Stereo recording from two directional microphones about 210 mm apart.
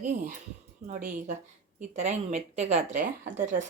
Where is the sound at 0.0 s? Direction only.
35° right (ahead or behind).